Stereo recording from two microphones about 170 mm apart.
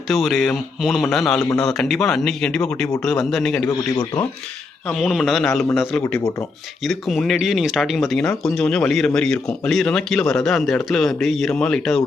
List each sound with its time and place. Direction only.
0.1 s speech: centre (ahead or behind)
3.7 s speech: 20° left (ahead or behind)
4.9 s speech: centre (ahead or behind)